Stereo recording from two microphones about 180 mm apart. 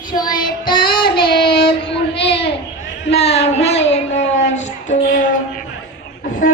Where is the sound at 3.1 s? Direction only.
35° left (ahead or behind).